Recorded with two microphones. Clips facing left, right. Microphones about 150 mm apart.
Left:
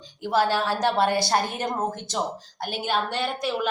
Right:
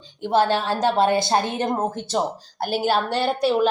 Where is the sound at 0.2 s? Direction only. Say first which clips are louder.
Right 3 dB; 25° right (ahead or behind).